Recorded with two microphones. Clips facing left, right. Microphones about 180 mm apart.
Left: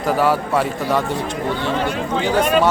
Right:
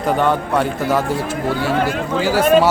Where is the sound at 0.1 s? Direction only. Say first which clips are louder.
Even; 5° left (ahead or behind).